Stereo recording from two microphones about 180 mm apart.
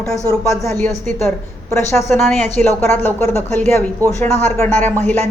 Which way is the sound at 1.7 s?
15° left (ahead or behind).